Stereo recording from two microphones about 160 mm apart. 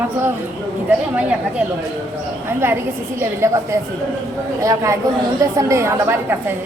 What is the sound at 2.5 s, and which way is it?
A woman's voice, 15° right (ahead or behind).